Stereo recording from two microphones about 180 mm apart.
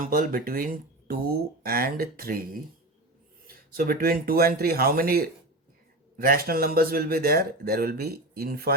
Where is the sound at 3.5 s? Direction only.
55° right (ahead or behind).